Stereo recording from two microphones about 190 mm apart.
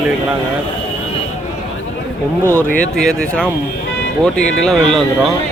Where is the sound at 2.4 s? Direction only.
15° right (ahead or behind).